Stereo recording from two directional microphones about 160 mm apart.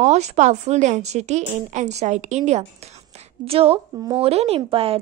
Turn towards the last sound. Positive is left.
turn(degrees=-35)  # may be behind; listen again after turning